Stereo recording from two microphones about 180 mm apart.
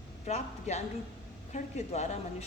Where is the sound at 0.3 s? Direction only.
40° left (ahead or behind).